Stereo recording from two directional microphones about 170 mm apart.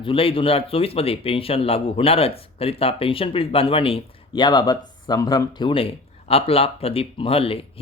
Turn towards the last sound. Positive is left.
turn(degrees=35)  # may be behind; listen again after turning